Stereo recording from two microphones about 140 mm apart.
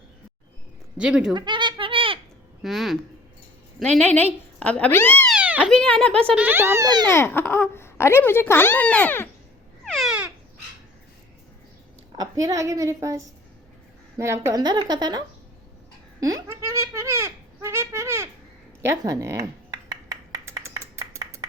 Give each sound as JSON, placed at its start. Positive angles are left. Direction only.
{"t": 0.9, "sound": "a child's voice", "side_deg": -5}
{"t": 1.3, "sound": "a sound", "side_deg": -35}
{"t": 2.6, "sound": "speech", "side_deg": 0}
{"t": 5.3, "sound": "cat", "side_deg": -10}
{"t": 5.7, "sound": "speech", "side_deg": 5}
{"t": 6.3, "sound": "a child's voice", "side_deg": -15}
{"t": 6.8, "sound": "a woman's voice", "side_deg": -30}
{"t": 7.1, "sound": "speech", "side_deg": 15}
{"t": 9.8, "sound": "a sound", "side_deg": 0}
{"t": 12.1, "sound": "a woman's voice", "side_deg": -25}
{"t": 14.6, "sound": "speech", "side_deg": -30}
{"t": 16.2, "sound": "a sound", "side_deg": -20}